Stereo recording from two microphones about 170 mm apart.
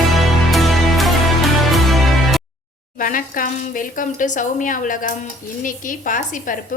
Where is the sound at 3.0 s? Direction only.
50° left (ahead or behind).